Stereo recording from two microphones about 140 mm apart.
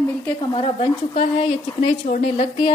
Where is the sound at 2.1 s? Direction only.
60° left (ahead or behind).